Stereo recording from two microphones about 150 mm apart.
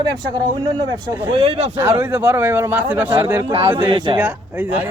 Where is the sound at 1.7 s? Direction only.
15° right (ahead or behind).